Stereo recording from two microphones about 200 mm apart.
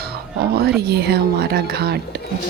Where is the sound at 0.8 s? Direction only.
55° right (ahead or behind).